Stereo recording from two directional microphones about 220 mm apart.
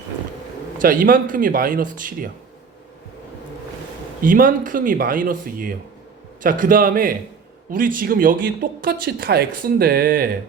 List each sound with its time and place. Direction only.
0.8 s speech: 40° right (ahead or behind)
4.2 s speech: 40° right (ahead or behind)